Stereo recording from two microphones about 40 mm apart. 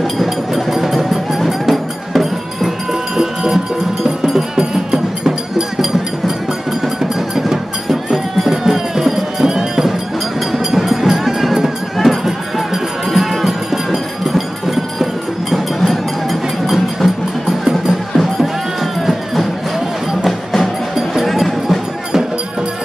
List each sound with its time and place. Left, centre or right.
0.0 s music: centre
7.0 s music: centre
15.5 s a sound: centre
17.8 s music: centre